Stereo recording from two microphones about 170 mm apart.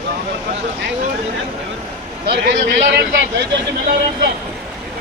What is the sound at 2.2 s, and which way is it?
Speech, 80° right.